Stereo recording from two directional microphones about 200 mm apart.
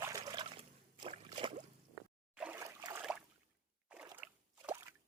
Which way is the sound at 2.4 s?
10° right (ahead or behind).